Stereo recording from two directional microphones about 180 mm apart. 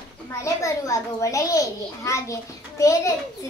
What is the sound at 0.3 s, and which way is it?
A child's voice, 15° left (ahead or behind).